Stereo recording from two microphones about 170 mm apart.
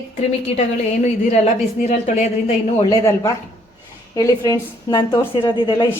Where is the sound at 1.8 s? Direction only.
45° left (ahead or behind).